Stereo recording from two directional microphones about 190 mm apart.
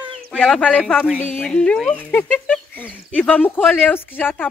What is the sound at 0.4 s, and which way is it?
Speech, 5° left (ahead or behind).